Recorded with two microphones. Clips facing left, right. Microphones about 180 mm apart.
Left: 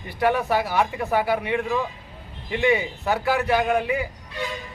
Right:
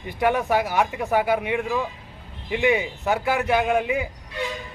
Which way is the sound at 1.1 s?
15° right (ahead or behind).